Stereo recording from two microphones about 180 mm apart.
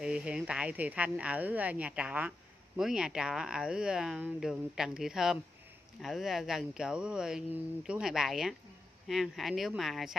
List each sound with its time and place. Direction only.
0.0 s speech: 5° right (ahead or behind)